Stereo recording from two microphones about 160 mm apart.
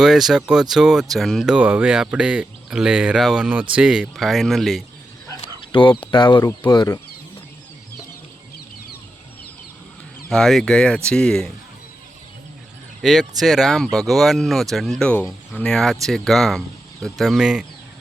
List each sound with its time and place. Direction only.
0.0 s speech: centre (ahead or behind)
5.7 s speech: 30° left (ahead or behind)
10.2 s speech: centre (ahead or behind)
13.0 s speech: centre (ahead or behind)